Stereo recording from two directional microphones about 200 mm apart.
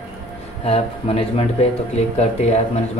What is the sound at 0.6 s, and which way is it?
Speech, 30° left (ahead or behind).